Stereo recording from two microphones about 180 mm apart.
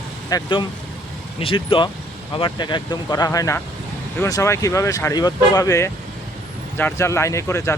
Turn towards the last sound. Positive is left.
turn(degrees=15)  # may be behind; listen again after turning